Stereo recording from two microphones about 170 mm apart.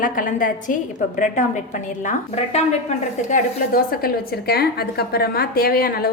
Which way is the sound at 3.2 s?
55° left (ahead or behind).